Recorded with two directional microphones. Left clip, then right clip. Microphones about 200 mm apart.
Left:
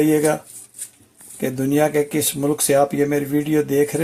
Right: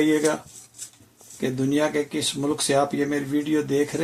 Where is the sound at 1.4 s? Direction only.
45° left (ahead or behind).